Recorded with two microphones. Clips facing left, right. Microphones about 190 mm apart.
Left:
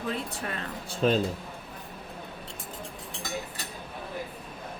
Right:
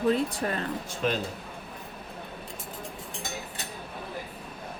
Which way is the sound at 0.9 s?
30° left (ahead or behind).